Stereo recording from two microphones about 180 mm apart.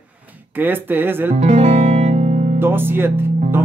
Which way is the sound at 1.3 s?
40° right (ahead or behind).